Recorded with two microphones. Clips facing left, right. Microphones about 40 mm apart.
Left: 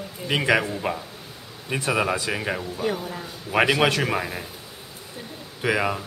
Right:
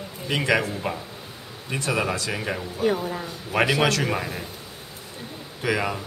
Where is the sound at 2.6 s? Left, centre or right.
Centre.